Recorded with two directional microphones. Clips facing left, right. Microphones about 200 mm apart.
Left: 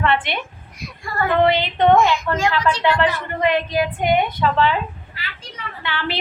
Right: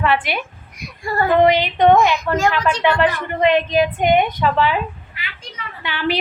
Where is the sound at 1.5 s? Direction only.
15° right (ahead or behind).